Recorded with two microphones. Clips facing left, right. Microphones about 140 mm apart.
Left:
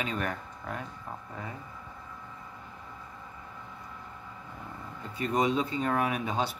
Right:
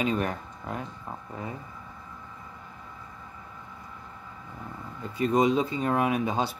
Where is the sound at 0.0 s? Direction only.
20° right (ahead or behind).